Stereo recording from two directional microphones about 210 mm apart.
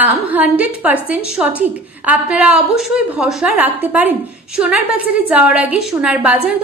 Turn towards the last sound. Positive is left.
turn(degrees=-5)  # may be behind; listen again after turning